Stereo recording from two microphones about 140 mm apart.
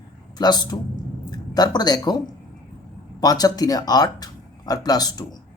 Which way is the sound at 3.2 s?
25° left (ahead or behind).